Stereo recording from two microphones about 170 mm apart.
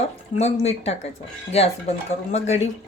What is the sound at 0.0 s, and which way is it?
Speech, 40° left (ahead or behind).